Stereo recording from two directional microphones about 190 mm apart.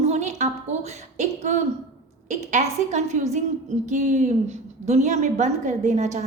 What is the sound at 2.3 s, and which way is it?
A woman's voice, 40° right (ahead or behind).